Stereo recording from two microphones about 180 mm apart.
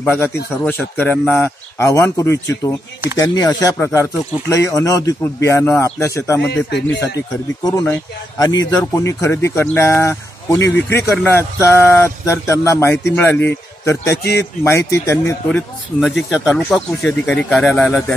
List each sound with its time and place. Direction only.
0.0 s speech: 10° left (ahead or behind)
6.4 s speech: 70° left (ahead or behind)
7.8 s speech: 15° left (ahead or behind)